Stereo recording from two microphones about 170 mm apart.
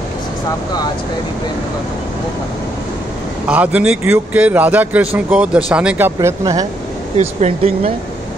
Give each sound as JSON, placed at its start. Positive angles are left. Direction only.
{"t": 3.4, "sound": "a man's voice", "side_deg": -10}
{"t": 6.1, "sound": "speech", "side_deg": -20}
{"t": 7.2, "sound": "speech", "side_deg": -40}